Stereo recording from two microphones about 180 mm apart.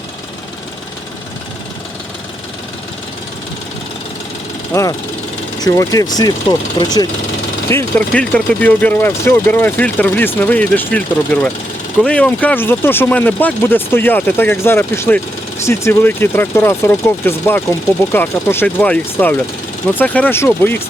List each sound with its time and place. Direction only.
4.7 s speech: 20° left (ahead or behind)
7.7 s speech: 10° left (ahead or behind)